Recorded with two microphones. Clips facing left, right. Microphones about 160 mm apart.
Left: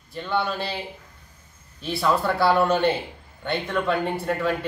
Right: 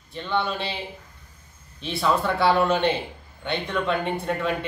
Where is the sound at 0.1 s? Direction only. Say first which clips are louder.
Even; 5° left (ahead or behind).